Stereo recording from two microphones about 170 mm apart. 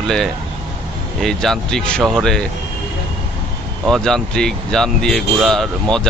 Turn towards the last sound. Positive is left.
turn(degrees=5)  # may be behind; listen again after turning